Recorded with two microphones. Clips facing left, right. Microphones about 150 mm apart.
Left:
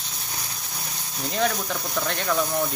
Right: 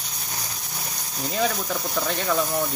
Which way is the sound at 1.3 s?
5° right (ahead or behind).